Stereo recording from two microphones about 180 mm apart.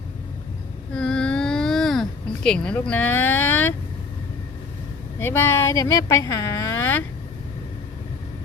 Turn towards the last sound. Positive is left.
turn(degrees=15)  # may be behind; listen again after turning